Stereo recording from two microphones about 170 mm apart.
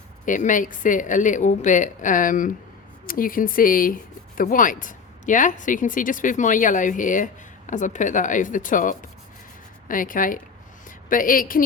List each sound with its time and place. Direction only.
0.3 s speech: 50° left (ahead or behind)